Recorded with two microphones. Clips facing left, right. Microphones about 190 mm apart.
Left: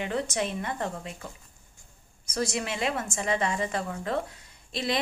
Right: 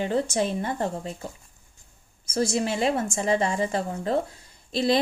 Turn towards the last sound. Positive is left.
turn(degrees=-35)  # may be behind; listen again after turning